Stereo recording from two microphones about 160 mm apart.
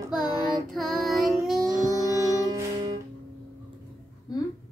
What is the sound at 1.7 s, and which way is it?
Music, 25° right (ahead or behind).